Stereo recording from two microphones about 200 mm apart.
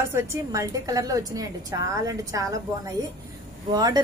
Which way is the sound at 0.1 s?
15° right (ahead or behind).